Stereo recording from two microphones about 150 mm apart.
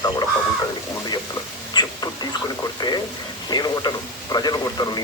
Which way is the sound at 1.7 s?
30° left (ahead or behind).